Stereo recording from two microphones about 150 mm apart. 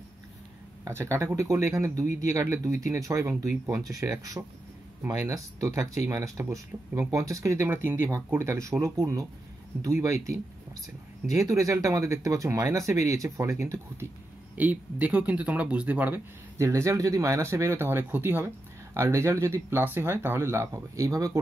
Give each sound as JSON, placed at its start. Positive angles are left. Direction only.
{"t": 0.8, "sound": "speech", "side_deg": -20}
{"t": 11.3, "sound": "speech", "side_deg": -20}